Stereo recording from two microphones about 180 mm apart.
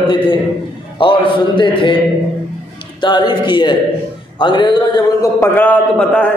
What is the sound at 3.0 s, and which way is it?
A man's voice, 25° left (ahead or behind).